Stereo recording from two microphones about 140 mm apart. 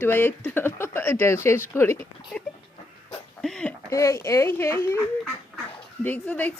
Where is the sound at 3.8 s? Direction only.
20° left (ahead or behind).